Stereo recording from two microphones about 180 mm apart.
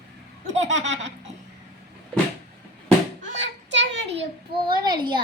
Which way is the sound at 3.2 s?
90° right.